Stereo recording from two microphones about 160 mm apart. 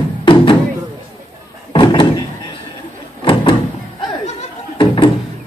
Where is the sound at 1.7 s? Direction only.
30° left (ahead or behind).